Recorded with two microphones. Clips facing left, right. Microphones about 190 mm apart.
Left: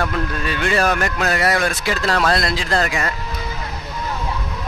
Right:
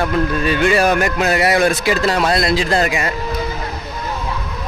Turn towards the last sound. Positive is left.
turn(degrees=-15)  # may be behind; listen again after turning